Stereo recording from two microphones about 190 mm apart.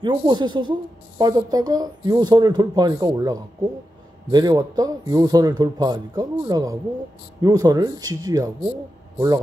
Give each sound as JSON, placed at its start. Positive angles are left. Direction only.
{"t": 0.0, "sound": "speech", "side_deg": -25}